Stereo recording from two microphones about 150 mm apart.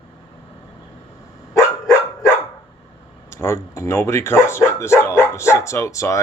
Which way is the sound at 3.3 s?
20° left (ahead or behind).